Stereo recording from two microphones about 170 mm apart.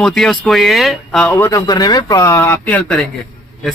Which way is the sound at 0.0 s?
5° left (ahead or behind).